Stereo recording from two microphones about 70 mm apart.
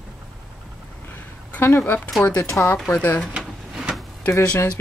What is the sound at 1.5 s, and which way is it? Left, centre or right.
Speech, left.